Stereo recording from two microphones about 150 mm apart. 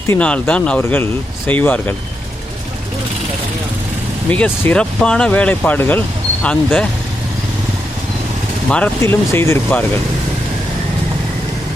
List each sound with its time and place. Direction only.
0.1 s speech: 10° left (ahead or behind)
4.3 s speech: 10° left (ahead or behind)
9.0 s speech: 15° left (ahead or behind)